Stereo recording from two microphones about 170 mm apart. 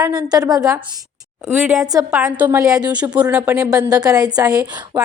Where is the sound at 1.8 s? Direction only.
20° right (ahead or behind).